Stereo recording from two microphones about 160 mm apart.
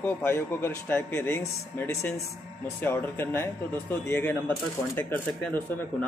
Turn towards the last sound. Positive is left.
turn(degrees=10)  # may be behind; listen again after turning